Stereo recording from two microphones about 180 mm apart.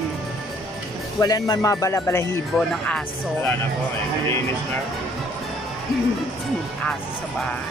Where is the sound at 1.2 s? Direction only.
20° left (ahead or behind).